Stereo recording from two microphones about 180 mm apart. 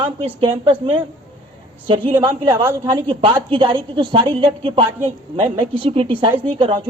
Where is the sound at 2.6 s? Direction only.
15° right (ahead or behind).